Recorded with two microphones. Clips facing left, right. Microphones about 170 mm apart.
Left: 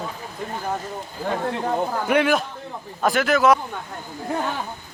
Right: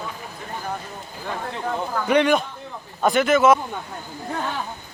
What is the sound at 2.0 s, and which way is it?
A man's voice, 5° left (ahead or behind).